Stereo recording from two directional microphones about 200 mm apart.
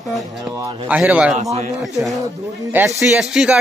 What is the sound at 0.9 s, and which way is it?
Speech, 5° right (ahead or behind).